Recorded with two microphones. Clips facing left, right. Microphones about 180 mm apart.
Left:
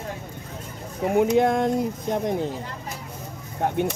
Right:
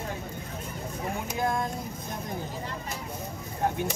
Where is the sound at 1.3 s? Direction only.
75° left (ahead or behind).